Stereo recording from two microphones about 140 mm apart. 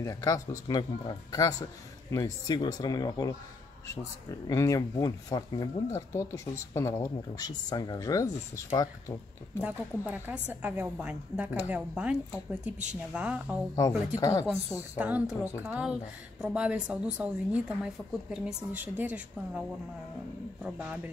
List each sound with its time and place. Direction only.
0.0 s speech: 25° left (ahead or behind)
4.5 s speech: 25° left (ahead or behind)
9.6 s a woman's voice: 10° right (ahead or behind)
13.7 s speech: 25° left (ahead or behind)
14.4 s a woman's voice: 10° right (ahead or behind)
20.6 s a woman's voice: 10° right (ahead or behind)